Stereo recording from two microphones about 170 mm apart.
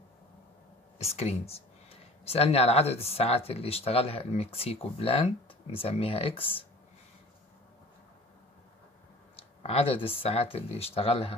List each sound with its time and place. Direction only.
0.9 s speech: 40° left (ahead or behind)
9.4 s speech: 35° left (ahead or behind)